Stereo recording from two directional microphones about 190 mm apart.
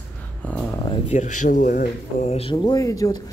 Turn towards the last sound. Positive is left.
turn(degrees=20)  # may be behind; listen again after turning